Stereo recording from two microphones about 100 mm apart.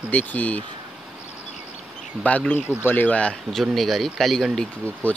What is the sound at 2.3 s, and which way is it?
Speech, 15° left (ahead or behind).